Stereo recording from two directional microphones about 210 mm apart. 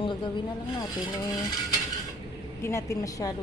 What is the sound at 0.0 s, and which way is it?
Vehicle, 20° left (ahead or behind).